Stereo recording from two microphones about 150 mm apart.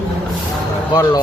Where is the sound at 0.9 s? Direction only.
25° left (ahead or behind).